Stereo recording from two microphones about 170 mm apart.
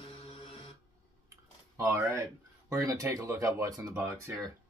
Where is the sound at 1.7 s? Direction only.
15° right (ahead or behind).